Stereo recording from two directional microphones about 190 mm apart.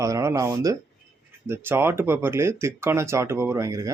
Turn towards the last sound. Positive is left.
turn(degrees=-15)  # may be behind; listen again after turning